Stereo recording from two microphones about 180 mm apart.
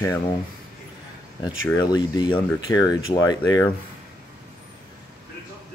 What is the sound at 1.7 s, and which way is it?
Speech, 25° left (ahead or behind).